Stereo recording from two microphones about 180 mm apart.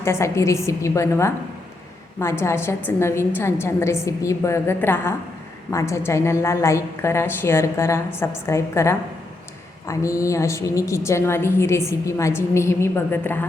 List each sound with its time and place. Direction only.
0.0 s a woman's voice: 15° left (ahead or behind)
2.4 s a woman's voice: 15° left (ahead or behind)